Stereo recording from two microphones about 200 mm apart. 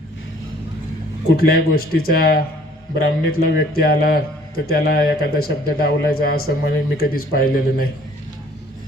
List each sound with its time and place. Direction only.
1.4 s a man's voice: 50° left (ahead or behind)